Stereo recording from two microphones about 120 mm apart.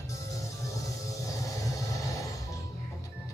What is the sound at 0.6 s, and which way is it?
Music, 25° left (ahead or behind).